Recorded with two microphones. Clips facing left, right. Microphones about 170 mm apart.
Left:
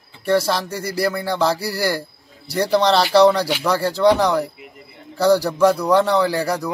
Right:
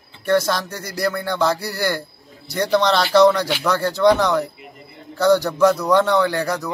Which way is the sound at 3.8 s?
30° left (ahead or behind).